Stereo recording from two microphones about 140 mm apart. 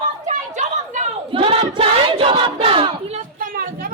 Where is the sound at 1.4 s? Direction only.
40° right (ahead or behind).